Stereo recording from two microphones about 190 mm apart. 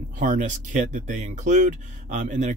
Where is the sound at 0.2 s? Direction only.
40° right (ahead or behind).